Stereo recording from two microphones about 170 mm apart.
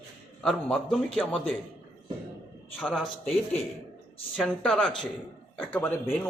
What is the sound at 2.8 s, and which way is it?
Speech, 5° left (ahead or behind).